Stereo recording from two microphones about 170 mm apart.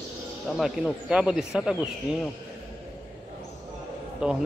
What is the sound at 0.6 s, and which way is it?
Speech, centre (ahead or behind).